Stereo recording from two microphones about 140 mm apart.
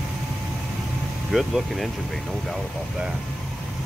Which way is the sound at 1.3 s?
Centre (ahead or behind).